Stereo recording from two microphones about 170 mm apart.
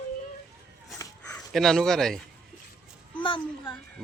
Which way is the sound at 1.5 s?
Centre (ahead or behind).